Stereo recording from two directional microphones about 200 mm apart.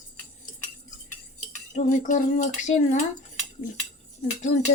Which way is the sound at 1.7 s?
35° left (ahead or behind).